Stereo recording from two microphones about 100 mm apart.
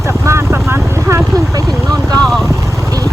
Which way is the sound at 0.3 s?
25° right (ahead or behind).